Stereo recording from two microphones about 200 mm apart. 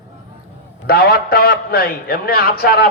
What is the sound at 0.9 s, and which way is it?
A man's voice, 50° left (ahead or behind).